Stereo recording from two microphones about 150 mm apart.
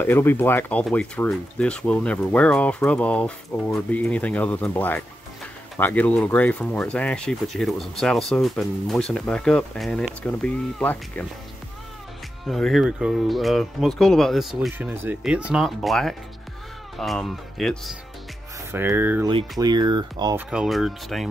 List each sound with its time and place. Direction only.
0.0 s speech: 15° left (ahead or behind)
12.4 s speech: centre (ahead or behind)
18.7 s speech: 15° right (ahead or behind)
19.6 s speech: 30° right (ahead or behind)
20.3 s speech: 5° right (ahead or behind)